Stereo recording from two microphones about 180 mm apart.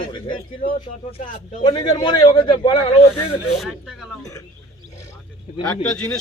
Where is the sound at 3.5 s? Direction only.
Centre (ahead or behind).